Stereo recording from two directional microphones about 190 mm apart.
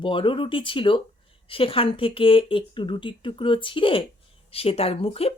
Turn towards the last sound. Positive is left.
turn(degrees=30)  # may be behind; listen again after turning